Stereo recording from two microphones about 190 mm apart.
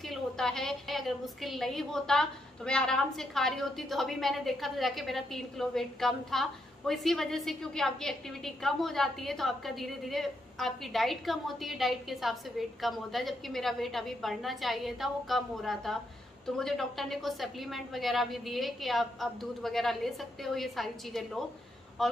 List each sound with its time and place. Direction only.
0.0 s a woman's voice: centre (ahead or behind)